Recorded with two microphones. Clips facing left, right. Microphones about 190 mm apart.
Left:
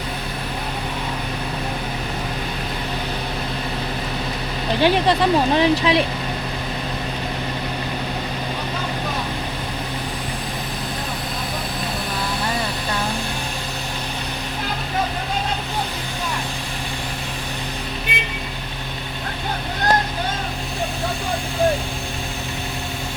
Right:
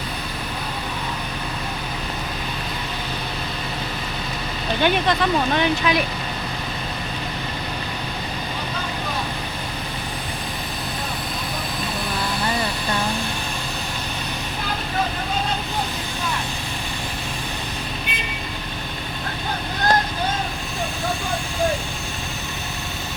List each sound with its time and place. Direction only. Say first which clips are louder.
4.8 s speech: left 3 dB; 30° left (ahead or behind)